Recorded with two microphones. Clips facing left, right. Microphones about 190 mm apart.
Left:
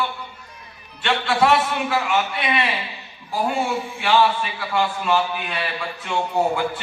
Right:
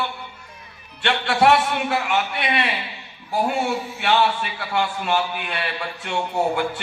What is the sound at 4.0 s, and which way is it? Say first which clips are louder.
A man's voice: left 2 dB; 60° right (ahead or behind).